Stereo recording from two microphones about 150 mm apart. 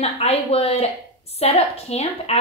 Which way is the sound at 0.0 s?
40° left (ahead or behind).